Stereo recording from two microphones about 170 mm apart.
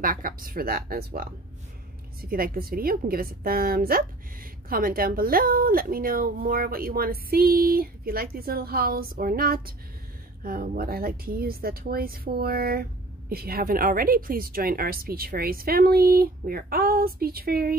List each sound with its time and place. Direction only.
0.0 s a woman's voice: 55° right (ahead or behind)